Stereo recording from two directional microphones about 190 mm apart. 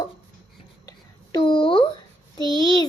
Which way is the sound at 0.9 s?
20° left (ahead or behind).